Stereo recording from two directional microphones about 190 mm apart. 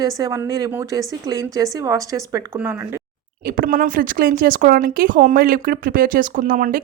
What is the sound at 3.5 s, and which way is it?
A woman's voice, 45° right (ahead or behind).